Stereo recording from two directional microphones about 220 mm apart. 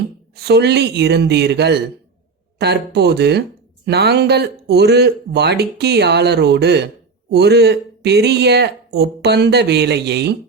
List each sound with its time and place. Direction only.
0.3 s speech: 50° right (ahead or behind)